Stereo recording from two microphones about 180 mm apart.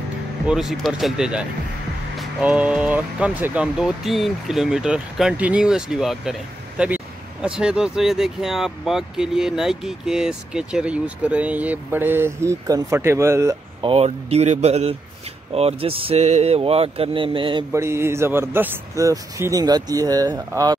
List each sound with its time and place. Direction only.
0.5 s speech: centre (ahead or behind)
13.8 s speech: 35° right (ahead or behind)
17.7 s speech: 15° right (ahead or behind)